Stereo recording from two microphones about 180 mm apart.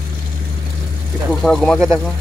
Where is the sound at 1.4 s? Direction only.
Centre (ahead or behind).